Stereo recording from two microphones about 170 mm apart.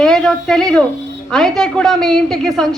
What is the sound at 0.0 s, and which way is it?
A woman's voice, centre (ahead or behind).